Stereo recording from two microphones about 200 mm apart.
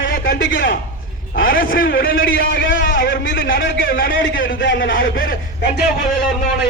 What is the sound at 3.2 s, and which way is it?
Speech, 65° left (ahead or behind).